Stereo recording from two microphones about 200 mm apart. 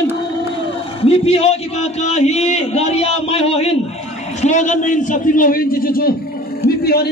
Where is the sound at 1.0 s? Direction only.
30° left (ahead or behind).